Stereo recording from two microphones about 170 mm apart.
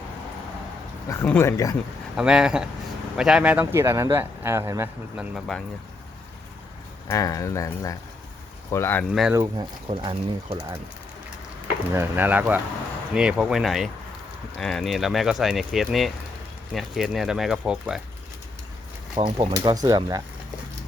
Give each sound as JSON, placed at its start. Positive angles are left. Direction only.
{"t": 1.0, "sound": "speech", "side_deg": 15}
{"t": 2.1, "sound": "speech", "side_deg": -5}
{"t": 5.3, "sound": "speech", "side_deg": 5}
{"t": 7.1, "sound": "speech", "side_deg": 20}
{"t": 9.0, "sound": "speech", "side_deg": -5}
{"t": 9.3, "sound": "speech", "side_deg": -20}
{"t": 9.9, "sound": "speech", "side_deg": -30}
{"t": 11.9, "sound": "speech", "side_deg": -10}
{"t": 19.1, "sound": "speech", "side_deg": -25}